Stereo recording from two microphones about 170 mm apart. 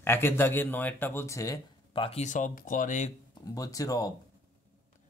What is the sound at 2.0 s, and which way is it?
Speech, 35° left (ahead or behind).